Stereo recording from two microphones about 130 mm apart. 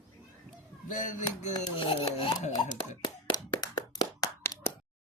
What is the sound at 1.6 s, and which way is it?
Speech, 40° left (ahead or behind).